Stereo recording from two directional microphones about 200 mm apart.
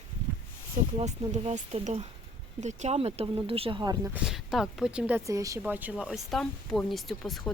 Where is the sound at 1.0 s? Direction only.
35° right (ahead or behind).